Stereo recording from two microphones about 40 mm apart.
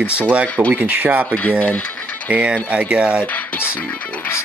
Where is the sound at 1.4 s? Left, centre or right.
Left.